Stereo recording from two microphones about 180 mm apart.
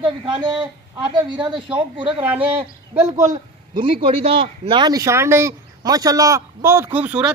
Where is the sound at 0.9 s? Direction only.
25° right (ahead or behind).